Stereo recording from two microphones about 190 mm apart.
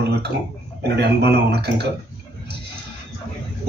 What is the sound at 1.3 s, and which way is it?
Speech, 60° right (ahead or behind).